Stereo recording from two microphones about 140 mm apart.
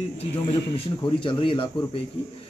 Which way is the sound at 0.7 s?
35° left (ahead or behind).